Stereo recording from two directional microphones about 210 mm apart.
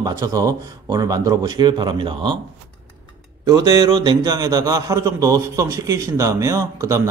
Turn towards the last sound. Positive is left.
turn(degrees=-15)  # may be behind; listen again after turning